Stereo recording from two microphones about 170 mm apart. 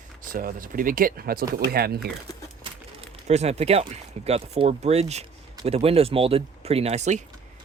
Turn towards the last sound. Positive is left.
turn(degrees=-40)  # may be behind; listen again after turning